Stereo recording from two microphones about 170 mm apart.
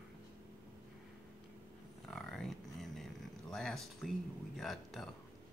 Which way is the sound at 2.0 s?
5° left (ahead or behind).